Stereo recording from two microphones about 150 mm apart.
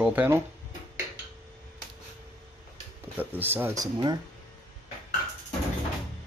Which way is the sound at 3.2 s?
15° right (ahead or behind).